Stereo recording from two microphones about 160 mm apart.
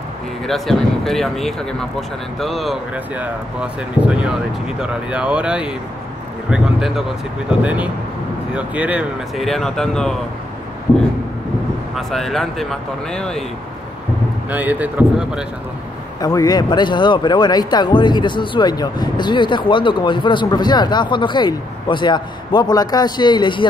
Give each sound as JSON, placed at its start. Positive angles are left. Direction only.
{"t": 0.5, "sound": "speech", "side_deg": 0}
{"t": 11.9, "sound": "speech", "side_deg": 0}
{"t": 14.5, "sound": "speech", "side_deg": -10}
{"t": 16.2, "sound": "speech", "side_deg": 25}